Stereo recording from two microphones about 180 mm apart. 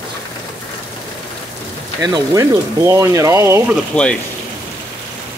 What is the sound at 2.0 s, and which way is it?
Speech, 20° right (ahead or behind).